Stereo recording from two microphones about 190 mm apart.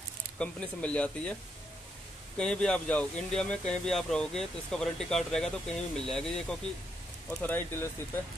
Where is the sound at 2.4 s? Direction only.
5° left (ahead or behind).